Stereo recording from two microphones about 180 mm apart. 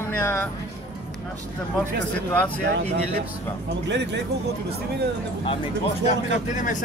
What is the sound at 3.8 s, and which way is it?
Speech, 75° right (ahead or behind).